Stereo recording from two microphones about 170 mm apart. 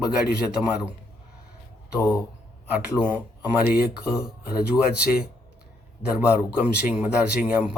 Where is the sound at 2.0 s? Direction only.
15° left (ahead or behind).